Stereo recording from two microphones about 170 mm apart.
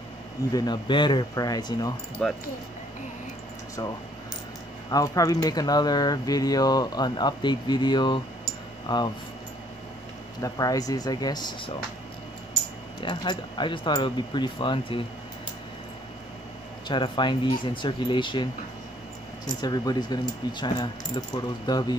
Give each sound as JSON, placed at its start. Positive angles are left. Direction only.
{"t": 0.5, "sound": "speech", "side_deg": 25}
{"t": 2.2, "sound": "speech", "side_deg": 5}
{"t": 4.9, "sound": "speech", "side_deg": 20}
{"t": 10.4, "sound": "speech", "side_deg": 20}
{"t": 13.0, "sound": "speech", "side_deg": 25}
{"t": 16.8, "sound": "speech", "side_deg": 25}